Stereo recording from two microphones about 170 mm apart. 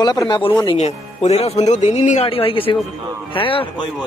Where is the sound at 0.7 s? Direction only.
40° left (ahead or behind).